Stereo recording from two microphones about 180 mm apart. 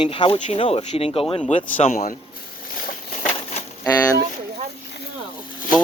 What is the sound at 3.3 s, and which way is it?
Bird, 35° left (ahead or behind).